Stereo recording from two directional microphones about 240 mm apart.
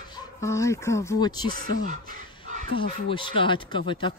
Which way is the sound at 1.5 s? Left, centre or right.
Right.